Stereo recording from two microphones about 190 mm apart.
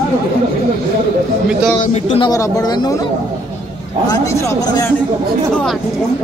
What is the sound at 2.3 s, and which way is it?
Speech, 20° left (ahead or behind).